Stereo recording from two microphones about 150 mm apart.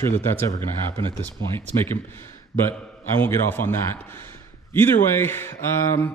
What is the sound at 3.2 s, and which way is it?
A man's voice, 15° left (ahead or behind).